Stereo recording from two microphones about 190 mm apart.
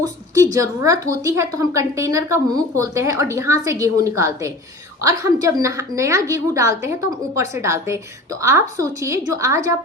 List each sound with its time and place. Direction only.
0.0 s a woman's voice: 15° right (ahead or behind)